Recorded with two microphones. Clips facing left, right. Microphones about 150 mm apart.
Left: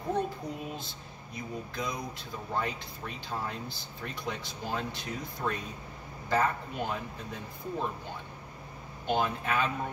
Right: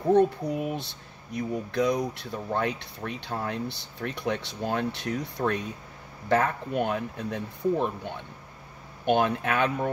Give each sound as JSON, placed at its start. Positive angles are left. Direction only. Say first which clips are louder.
{"t": 0.1, "sound": "speech", "louder": "right 11 dB", "side_deg": -65}